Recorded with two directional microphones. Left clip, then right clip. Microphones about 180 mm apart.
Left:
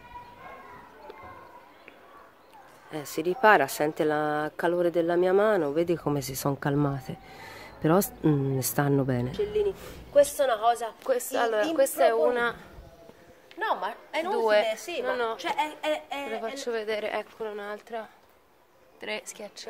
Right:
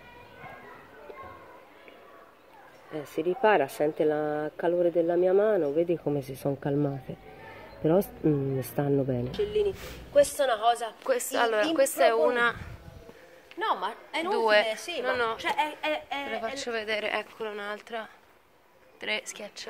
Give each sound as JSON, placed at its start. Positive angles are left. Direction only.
{"t": 3.0, "sound": "speech", "side_deg": 30}
{"t": 9.3, "sound": "a woman's voice", "side_deg": 0}
{"t": 13.6, "sound": "a woman's voice", "side_deg": 0}
{"t": 15.0, "sound": "a woman's voice", "side_deg": 15}
{"t": 15.4, "sound": "a woman's voice", "side_deg": -10}
{"t": 16.3, "sound": "a woman's voice", "side_deg": 20}